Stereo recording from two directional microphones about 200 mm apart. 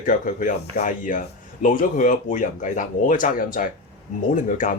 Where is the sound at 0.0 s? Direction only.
40° left (ahead or behind).